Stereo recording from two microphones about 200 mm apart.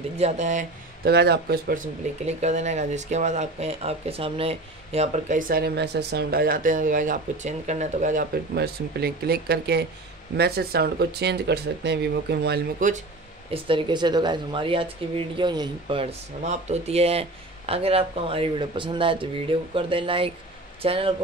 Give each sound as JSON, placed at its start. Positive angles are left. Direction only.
{"t": 0.2, "sound": "speech", "side_deg": -35}
{"t": 1.0, "sound": "speech", "side_deg": -55}
{"t": 8.5, "sound": "speech", "side_deg": -55}
{"t": 13.5, "sound": "speech", "side_deg": -25}